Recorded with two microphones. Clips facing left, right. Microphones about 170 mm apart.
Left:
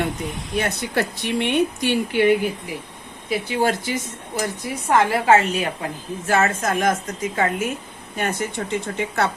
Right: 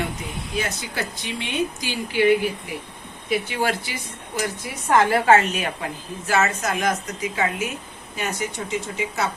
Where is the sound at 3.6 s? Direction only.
45° left (ahead or behind).